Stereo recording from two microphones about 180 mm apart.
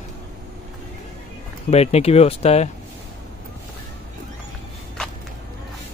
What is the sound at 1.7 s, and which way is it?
Speech, 35° left (ahead or behind).